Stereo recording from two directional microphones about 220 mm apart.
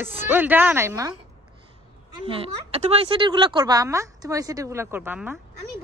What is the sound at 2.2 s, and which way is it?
A woman's voice, 25° right (ahead or behind).